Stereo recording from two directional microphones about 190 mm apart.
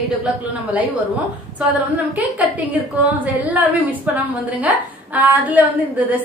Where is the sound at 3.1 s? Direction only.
10° right (ahead or behind).